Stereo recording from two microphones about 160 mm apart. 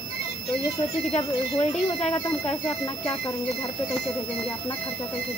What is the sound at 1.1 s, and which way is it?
Speech, 40° left (ahead or behind).